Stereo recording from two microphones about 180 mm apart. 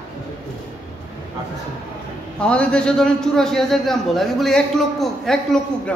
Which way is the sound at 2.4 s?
5° left (ahead or behind).